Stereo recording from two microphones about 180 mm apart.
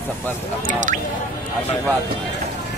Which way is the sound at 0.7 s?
45° right (ahead or behind).